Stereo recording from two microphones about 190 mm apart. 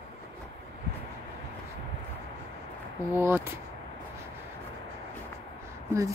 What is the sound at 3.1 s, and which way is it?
Speech, 10° right (ahead or behind).